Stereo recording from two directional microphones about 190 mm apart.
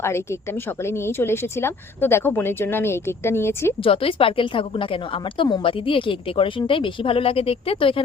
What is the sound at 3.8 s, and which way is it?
A woman's voice, 30° left (ahead or behind).